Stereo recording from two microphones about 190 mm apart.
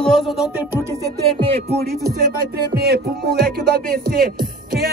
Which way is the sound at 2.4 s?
55° right (ahead or behind).